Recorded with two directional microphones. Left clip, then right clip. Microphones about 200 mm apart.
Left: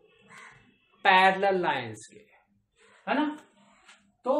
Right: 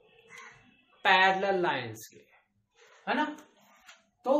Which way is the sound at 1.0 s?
25° left (ahead or behind).